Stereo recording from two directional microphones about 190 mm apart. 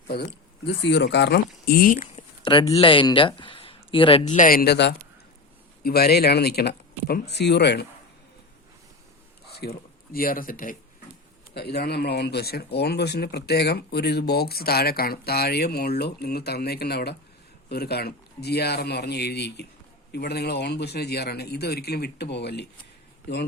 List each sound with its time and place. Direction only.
0.1 s speech: 55° left (ahead or behind); by 2.2 s 40° left (ahead or behind)
2.4 s speech: 25° left (ahead or behind)
4.4 s speech: 50° left (ahead or behind)
9.5 s speech: 55° left (ahead or behind)
11.5 s speech: 60° left (ahead or behind)